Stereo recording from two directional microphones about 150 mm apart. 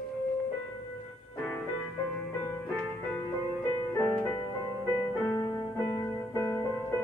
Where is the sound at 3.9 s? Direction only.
20° left (ahead or behind).